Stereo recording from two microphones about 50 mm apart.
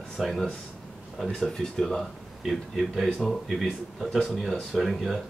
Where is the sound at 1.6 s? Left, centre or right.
Centre.